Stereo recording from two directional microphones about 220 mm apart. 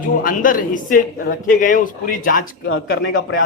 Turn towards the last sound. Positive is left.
turn(degrees=60)  # may be behind; listen again after turning